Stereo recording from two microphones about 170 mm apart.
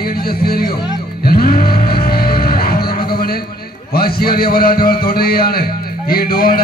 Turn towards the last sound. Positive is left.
turn(degrees=60)  # may be behind; listen again after turning